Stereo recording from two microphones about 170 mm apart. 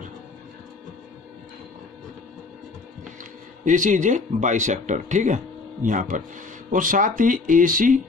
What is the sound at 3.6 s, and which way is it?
Speech, 50° right (ahead or behind).